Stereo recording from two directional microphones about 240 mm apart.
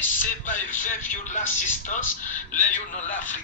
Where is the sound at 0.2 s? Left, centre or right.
Left.